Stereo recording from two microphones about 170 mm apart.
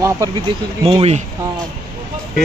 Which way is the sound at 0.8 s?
35° right (ahead or behind).